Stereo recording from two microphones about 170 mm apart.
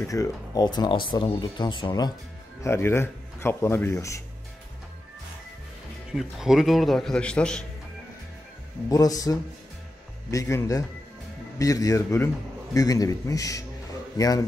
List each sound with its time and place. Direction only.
0.1 s speech: 20° left (ahead or behind)
6.1 s a man's voice: centre (ahead or behind)
8.9 s speech: 20° left (ahead or behind)